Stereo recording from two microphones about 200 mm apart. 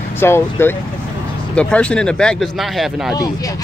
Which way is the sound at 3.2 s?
20° left (ahead or behind).